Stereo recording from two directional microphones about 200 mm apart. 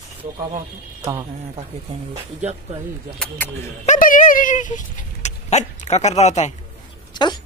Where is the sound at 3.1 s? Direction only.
10° left (ahead or behind).